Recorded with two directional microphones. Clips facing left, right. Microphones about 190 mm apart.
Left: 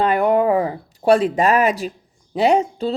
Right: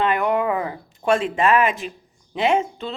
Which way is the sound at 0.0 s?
35° left (ahead or behind).